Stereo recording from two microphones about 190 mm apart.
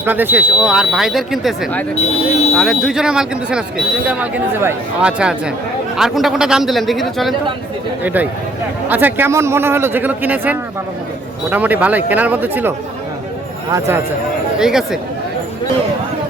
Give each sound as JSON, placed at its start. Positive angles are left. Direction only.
{"t": 0.0, "sound": "a man's voice", "side_deg": -10}
{"t": 14.6, "sound": "speech", "side_deg": -5}